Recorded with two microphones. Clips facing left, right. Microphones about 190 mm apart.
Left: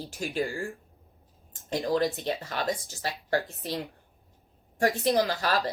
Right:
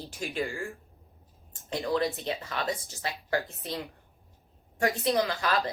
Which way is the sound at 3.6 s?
35° left (ahead or behind).